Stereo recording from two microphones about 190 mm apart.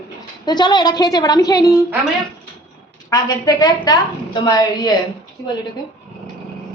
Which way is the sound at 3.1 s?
20° left (ahead or behind).